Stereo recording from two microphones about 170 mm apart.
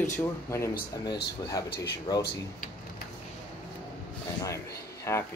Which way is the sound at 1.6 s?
75° left (ahead or behind).